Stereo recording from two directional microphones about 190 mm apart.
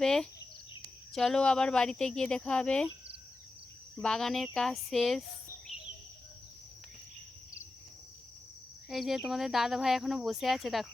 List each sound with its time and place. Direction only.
0.0 s speech: 5° left (ahead or behind)
4.0 s speech: centre (ahead or behind)
8.9 s speech: centre (ahead or behind)